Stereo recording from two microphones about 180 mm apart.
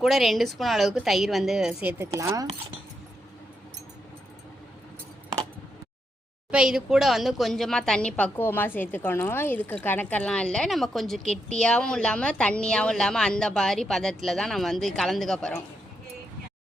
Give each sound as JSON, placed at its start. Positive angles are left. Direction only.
{"t": 0.0, "sound": "a woman's voice", "side_deg": 0}
{"t": 6.5, "sound": "a woman's voice", "side_deg": -5}